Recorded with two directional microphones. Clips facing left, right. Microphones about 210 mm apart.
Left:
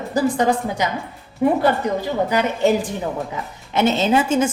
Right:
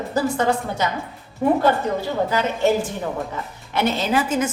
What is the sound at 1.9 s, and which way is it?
A woman's voice, 15° left (ahead or behind).